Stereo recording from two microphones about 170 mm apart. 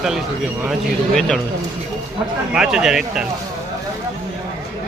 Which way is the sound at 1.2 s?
Centre (ahead or behind).